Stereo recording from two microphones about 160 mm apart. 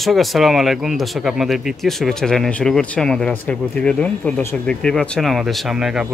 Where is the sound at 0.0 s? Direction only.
Centre (ahead or behind).